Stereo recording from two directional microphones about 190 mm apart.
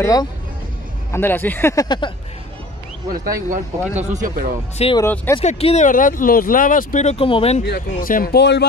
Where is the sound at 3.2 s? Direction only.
45° right (ahead or behind).